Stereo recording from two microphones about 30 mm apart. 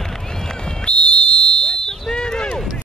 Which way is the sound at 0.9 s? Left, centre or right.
Left.